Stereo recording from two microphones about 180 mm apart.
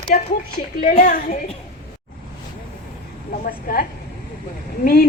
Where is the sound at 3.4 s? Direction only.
55° left (ahead or behind).